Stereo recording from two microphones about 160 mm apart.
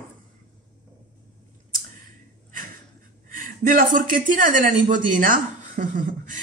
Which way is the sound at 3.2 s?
55° right (ahead or behind).